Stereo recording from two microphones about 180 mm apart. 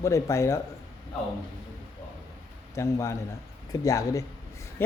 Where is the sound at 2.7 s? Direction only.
15° left (ahead or behind).